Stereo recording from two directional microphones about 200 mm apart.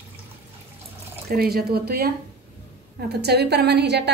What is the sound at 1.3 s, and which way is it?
A woman's voice, 50° right (ahead or behind).